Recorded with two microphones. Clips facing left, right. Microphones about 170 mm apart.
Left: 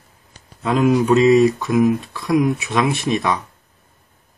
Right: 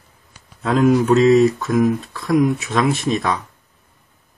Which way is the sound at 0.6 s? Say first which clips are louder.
Right 1 dB; centre (ahead or behind).